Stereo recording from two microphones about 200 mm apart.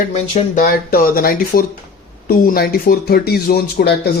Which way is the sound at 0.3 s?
45° left (ahead or behind).